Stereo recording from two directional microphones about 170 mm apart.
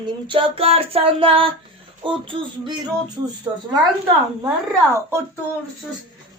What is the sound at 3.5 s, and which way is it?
Speech, 15° right (ahead or behind).